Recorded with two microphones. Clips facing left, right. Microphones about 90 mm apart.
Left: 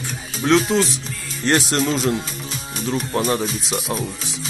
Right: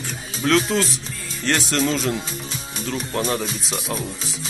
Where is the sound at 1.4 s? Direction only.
30° left (ahead or behind).